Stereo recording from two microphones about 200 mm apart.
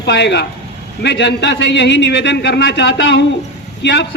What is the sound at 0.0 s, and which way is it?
A man's voice, 60° left (ahead or behind).